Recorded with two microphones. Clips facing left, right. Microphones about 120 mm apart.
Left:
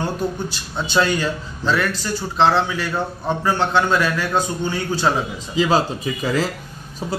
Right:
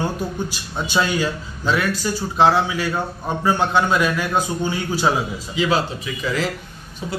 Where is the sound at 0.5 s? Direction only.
10° right (ahead or behind).